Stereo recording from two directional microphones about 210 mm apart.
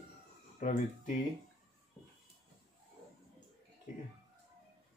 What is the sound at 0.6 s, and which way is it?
Speech, 40° left (ahead or behind).